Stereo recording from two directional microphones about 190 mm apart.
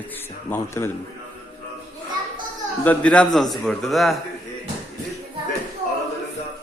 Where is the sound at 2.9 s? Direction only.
5° left (ahead or behind).